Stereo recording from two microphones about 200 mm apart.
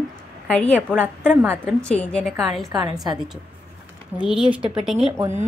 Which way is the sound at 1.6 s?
5° left (ahead or behind).